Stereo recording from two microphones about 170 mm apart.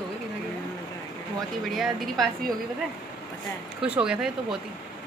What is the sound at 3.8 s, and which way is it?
Speech, 5° right (ahead or behind).